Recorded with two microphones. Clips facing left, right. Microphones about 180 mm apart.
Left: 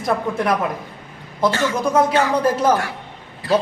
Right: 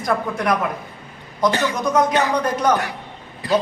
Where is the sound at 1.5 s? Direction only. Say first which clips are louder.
Even; 15° right (ahead or behind).